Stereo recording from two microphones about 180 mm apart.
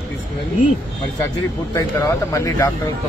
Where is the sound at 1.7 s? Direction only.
15° left (ahead or behind).